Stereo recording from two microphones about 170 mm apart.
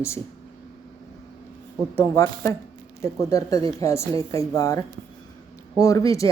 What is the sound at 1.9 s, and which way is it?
A woman's voice, 15° left (ahead or behind).